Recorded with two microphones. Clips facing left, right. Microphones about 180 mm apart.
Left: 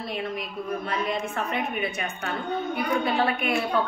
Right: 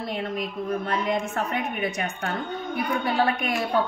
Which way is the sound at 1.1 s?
45° right (ahead or behind).